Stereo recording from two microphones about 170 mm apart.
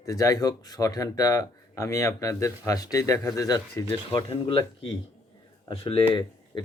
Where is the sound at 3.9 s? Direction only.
30° left (ahead or behind).